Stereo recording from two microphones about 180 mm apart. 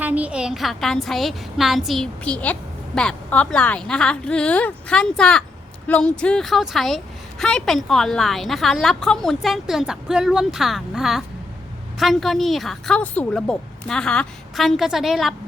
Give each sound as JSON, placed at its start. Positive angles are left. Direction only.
{"t": 0.0, "sound": "a woman's voice", "side_deg": -10}